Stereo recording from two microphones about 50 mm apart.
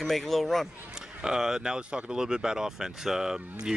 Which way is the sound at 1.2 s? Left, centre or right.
Centre.